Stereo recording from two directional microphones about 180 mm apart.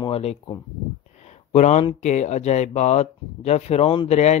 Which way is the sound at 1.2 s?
40° left (ahead or behind).